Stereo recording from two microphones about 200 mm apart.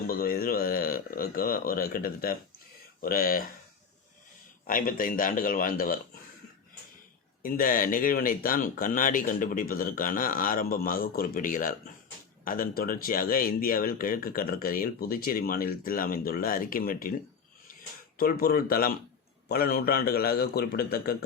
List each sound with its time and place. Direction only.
0.1 s speech: 45° left (ahead or behind)
4.6 s speech: 45° left (ahead or behind)
7.4 s speech: 45° left (ahead or behind)
18.2 s speech: 50° left (ahead or behind)